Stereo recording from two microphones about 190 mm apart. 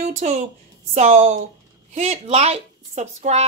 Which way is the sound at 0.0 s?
40° right (ahead or behind).